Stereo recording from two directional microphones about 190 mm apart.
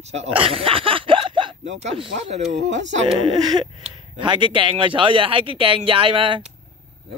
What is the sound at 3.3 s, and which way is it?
Speech, 20° right (ahead or behind).